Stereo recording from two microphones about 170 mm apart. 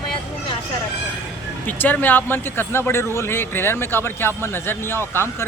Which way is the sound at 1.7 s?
10° left (ahead or behind).